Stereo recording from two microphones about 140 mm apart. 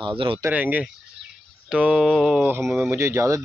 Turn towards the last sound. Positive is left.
turn(degrees=-20)  # may be behind; listen again after turning